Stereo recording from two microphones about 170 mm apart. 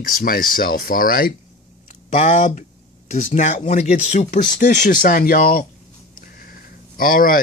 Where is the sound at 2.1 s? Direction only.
45° left (ahead or behind).